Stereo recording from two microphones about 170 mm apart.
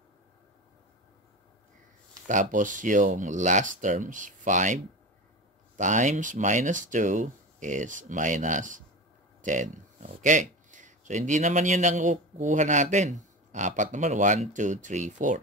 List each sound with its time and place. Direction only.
2.2 s speech: 50° right (ahead or behind)
5.8 s speech: 45° right (ahead or behind)